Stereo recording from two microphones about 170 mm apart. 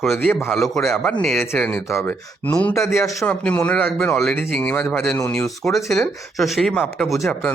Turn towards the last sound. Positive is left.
turn(degrees=0)  # may be behind; listen again after turning